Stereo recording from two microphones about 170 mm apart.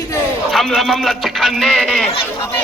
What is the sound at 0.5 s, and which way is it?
A man's voice, centre (ahead or behind).